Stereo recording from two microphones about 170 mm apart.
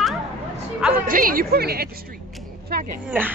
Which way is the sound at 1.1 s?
55° right (ahead or behind).